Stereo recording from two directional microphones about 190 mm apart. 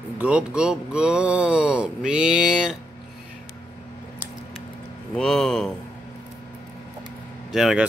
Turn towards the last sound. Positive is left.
turn(degrees=0)  # may be behind; listen again after turning